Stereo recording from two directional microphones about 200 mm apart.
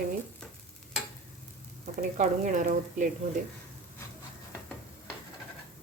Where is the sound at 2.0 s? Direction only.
40° right (ahead or behind).